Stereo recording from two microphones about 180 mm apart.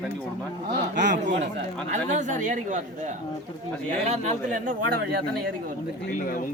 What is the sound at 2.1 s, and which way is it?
Speech, 45° right (ahead or behind).